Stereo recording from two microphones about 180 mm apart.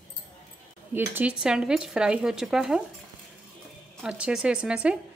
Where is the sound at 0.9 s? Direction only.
10° right (ahead or behind).